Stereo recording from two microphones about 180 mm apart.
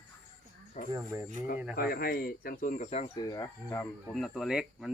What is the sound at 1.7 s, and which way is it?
Speech, 55° left (ahead or behind).